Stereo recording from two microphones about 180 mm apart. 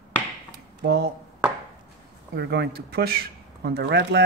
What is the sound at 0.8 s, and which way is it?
Speech, 70° right (ahead or behind).